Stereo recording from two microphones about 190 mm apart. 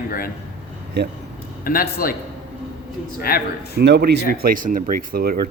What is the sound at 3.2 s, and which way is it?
Speech, 55° left (ahead or behind).